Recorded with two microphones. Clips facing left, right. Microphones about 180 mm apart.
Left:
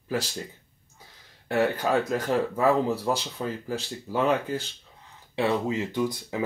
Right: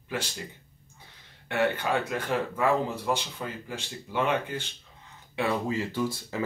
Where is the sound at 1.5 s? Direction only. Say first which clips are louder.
Left 3 dB; 40° left (ahead or behind).